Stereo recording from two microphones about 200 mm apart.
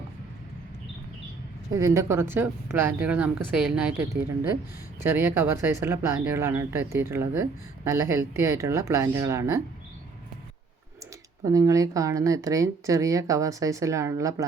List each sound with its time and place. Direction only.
1.7 s speech: 15° right (ahead or behind)
5.0 s speech: 10° right (ahead or behind)
11.4 s speech: 15° right (ahead or behind)